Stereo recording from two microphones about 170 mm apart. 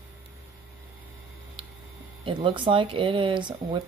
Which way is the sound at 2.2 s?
30° right (ahead or behind).